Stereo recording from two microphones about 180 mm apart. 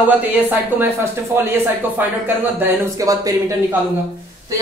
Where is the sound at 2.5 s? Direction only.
15° right (ahead or behind).